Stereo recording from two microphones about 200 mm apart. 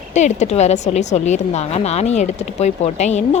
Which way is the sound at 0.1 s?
35° left (ahead or behind).